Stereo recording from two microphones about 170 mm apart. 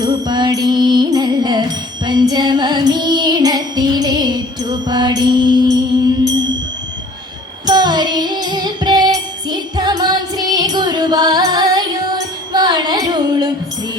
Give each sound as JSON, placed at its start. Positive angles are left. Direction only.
{"t": 0.0, "sound": "music", "side_deg": -25}
{"t": 7.7, "sound": "music", "side_deg": -25}